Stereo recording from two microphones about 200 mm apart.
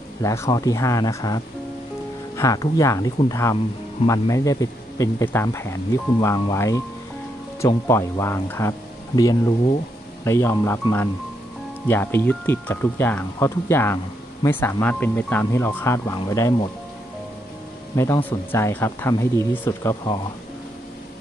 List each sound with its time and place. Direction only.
0.2 s speech: 15° left (ahead or behind)
17.9 s speech: 15° left (ahead or behind)